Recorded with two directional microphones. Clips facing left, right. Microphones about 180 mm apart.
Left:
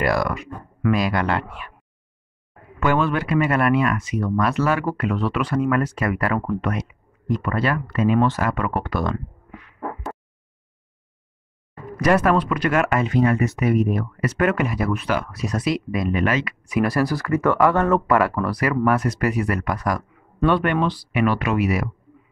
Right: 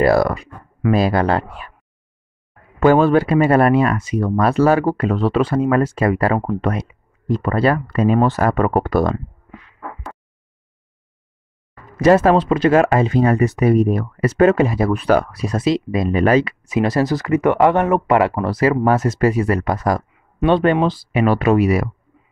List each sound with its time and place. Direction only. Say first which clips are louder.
0.0 s speech: right 7 dB; 35° right (ahead or behind)
2.8 s speech: right 8 dB; 35° right (ahead or behind)
11.9 s speech: right 5 dB; 25° right (ahead or behind)